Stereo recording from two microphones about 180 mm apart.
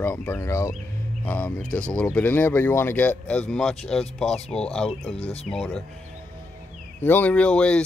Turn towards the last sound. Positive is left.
turn(degrees=5)  # may be behind; listen again after turning